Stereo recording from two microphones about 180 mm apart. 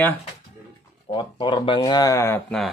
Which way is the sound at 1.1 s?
25° left (ahead or behind).